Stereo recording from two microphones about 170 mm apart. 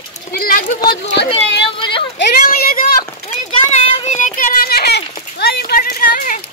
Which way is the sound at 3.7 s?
40° left (ahead or behind).